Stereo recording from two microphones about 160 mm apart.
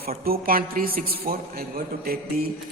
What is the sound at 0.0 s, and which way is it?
A man's voice, 70° right (ahead or behind).